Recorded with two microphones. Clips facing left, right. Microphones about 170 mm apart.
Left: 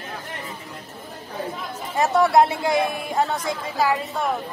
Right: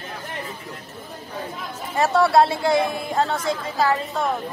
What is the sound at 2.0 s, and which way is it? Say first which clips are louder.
Speech: even; 15° left (ahead or behind).